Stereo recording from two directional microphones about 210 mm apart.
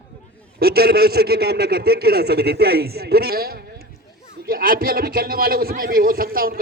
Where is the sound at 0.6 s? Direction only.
45° right (ahead or behind).